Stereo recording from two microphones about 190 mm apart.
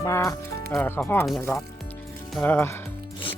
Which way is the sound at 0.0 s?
15° left (ahead or behind).